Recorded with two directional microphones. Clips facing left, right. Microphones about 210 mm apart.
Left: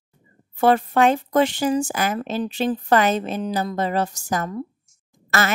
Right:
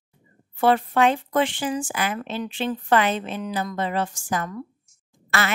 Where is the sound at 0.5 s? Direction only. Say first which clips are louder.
Left 2 dB; 45° left (ahead or behind).